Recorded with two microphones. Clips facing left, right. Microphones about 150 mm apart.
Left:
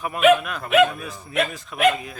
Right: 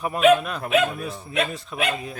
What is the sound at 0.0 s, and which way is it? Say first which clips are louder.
A man's voice: even; 35° right (ahead or behind).